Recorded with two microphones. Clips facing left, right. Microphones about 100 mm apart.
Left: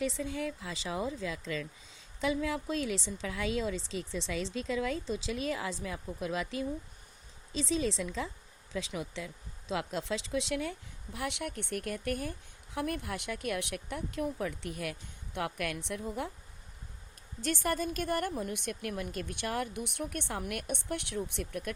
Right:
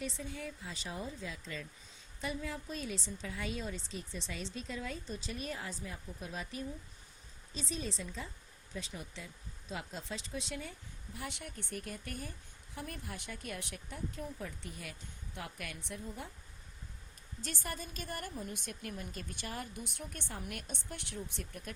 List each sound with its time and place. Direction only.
0.0 s a woman's voice: 90° left
17.4 s a woman's voice: 75° left (ahead or behind)